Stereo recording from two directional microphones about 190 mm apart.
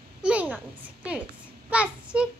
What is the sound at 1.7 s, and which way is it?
Speech, 5° right (ahead or behind).